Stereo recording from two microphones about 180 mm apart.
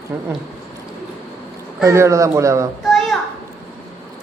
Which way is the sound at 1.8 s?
15° right (ahead or behind).